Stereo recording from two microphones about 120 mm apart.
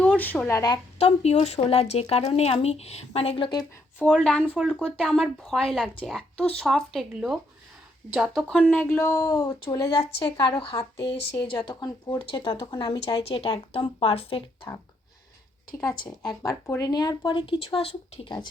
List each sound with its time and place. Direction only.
0.2 s speech: 15° left (ahead or behind)
0.5 s speech: 35° left (ahead or behind)
0.9 s speech: 60° left (ahead or behind); by 3.7 s 40° left (ahead or behind)
3.9 s speech: 10° left (ahead or behind)
8.7 s speech: 15° left (ahead or behind)
10.2 s speech: 45° left (ahead or behind)
11.6 s speech: 35° left (ahead or behind)
12.2 s speech: 45° left (ahead or behind)
13.2 s speech: 50° left (ahead or behind)
15.8 s speech: 30° left (ahead or behind); by 18.4 s 45° left (ahead or behind)